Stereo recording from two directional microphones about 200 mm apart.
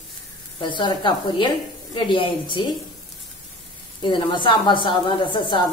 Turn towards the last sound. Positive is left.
turn(degrees=25)  # may be behind; listen again after turning